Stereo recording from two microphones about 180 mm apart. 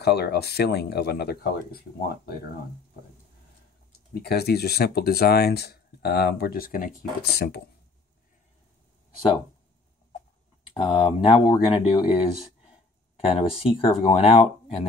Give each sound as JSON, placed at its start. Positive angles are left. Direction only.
{"t": 0.0, "sound": "speech", "side_deg": 65}
{"t": 4.1, "sound": "speech", "side_deg": 65}
{"t": 10.7, "sound": "speech", "side_deg": 25}